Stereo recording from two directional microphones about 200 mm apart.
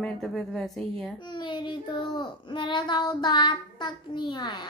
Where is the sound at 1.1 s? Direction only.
20° left (ahead or behind).